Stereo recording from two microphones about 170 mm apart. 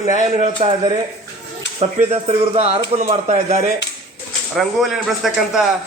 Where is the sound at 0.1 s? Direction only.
40° right (ahead or behind).